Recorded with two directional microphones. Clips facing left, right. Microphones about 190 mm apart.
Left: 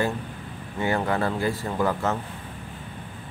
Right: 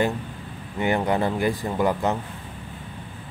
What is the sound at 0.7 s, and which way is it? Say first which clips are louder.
Speech: right 2 dB; 20° right (ahead or behind).